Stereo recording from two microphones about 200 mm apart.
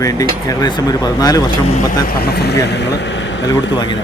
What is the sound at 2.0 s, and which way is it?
Speech, 50° left (ahead or behind).